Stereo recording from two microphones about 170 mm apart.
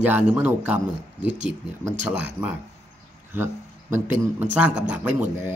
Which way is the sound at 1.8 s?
15° right (ahead or behind).